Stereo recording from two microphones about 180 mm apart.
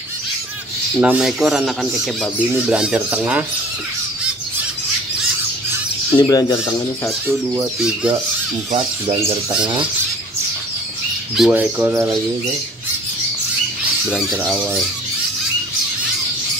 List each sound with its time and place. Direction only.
1.0 s speech: 5° right (ahead or behind)
6.1 s speech: 20° left (ahead or behind)
7.2 s speech: 10° right (ahead or behind)
11.3 s speech: 5° right (ahead or behind)
14.1 s speech: 5° right (ahead or behind)